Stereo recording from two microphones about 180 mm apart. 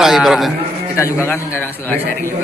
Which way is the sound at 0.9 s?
15° left (ahead or behind).